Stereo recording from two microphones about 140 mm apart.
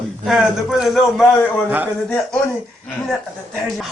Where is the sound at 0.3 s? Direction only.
Centre (ahead or behind).